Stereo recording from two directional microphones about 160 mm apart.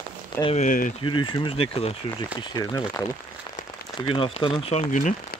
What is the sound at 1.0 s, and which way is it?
Speech, 30° left (ahead or behind).